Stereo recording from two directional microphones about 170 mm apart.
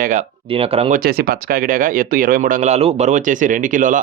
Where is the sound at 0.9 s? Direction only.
60° right (ahead or behind).